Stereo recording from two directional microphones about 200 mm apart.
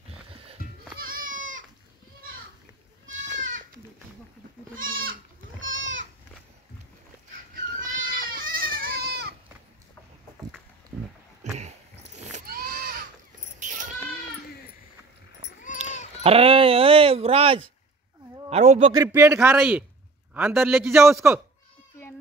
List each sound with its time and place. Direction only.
0.6 s goat: 50° left (ahead or behind)
0.9 s goat: 45° right (ahead or behind)
3.3 s goat: 40° right (ahead or behind)
5.6 s goat: 70° right (ahead or behind)
7.8 s goat: 45° right (ahead or behind)
11.5 s a sound: 35° right (ahead or behind)
16.2 s a sound: 30° right (ahead or behind)
18.5 s a man's voice: 30° right (ahead or behind)
18.9 s a man's voice: 15° right (ahead or behind)